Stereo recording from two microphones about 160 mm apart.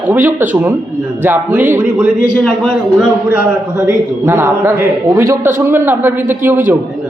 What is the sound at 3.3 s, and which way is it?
A man's voice, 10° right (ahead or behind).